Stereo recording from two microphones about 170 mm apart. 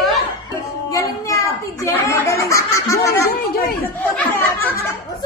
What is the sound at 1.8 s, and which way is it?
Speech, 15° left (ahead or behind).